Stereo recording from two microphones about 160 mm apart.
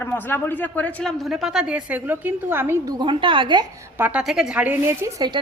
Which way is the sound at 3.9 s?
10° right (ahead or behind).